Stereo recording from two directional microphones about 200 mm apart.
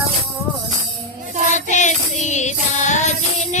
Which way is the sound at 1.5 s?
35° left (ahead or behind).